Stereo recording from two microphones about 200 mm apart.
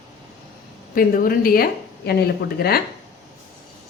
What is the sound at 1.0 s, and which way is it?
A woman's voice, 45° left (ahead or behind).